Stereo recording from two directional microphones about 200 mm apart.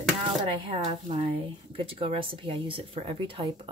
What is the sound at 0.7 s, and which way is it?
Speech, 30° right (ahead or behind).